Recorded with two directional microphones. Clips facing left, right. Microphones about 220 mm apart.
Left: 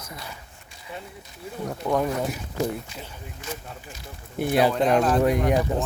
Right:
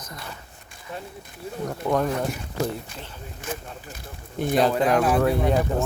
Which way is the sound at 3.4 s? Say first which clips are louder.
Right 3 dB; 50° right (ahead or behind).